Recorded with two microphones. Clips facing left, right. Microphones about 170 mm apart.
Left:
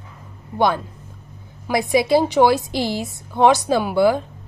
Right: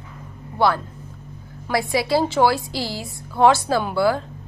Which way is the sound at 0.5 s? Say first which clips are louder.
Left 1 dB; 20° left (ahead or behind).